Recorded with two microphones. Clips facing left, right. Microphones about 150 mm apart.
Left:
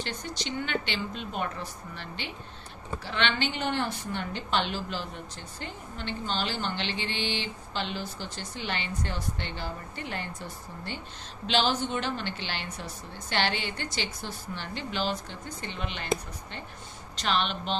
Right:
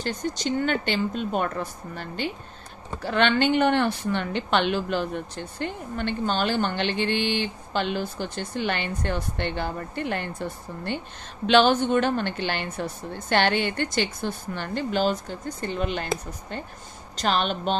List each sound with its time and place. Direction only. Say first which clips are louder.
0.0 s a woman's voice: right 7 dB; 45° right (ahead or behind)